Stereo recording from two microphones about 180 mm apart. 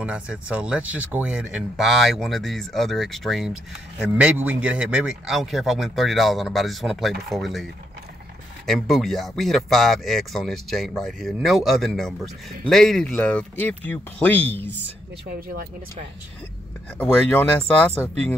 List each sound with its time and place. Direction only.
0.0 s speech: 5° right (ahead or behind)
8.6 s speech: centre (ahead or behind)
14.7 s speech: 80° right
15.3 s speech: 55° right (ahead or behind)
17.0 s speech: 10° left (ahead or behind)